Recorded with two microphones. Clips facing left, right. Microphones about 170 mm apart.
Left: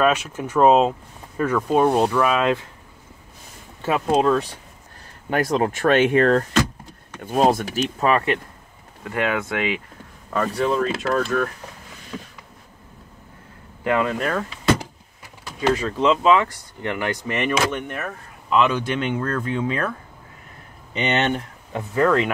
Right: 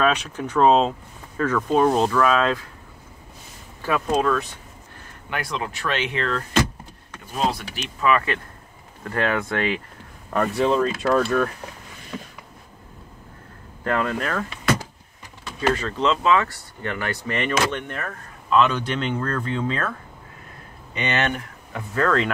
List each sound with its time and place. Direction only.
0.0 s speech: 5° left (ahead or behind)
3.8 s speech: 25° left (ahead or behind)
5.3 s speech: 45° left (ahead or behind)
9.0 s speech: 10° left (ahead or behind)
10.6 s speech: 30° right (ahead or behind)
13.8 s speech: 10° left (ahead or behind)
15.7 s speech: 10° left (ahead or behind)
20.9 s speech: 25° left (ahead or behind)